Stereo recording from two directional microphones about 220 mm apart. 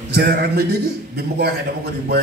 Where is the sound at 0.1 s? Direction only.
45° right (ahead or behind).